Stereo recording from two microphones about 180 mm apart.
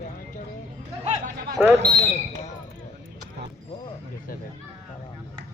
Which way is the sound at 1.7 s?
65° right (ahead or behind).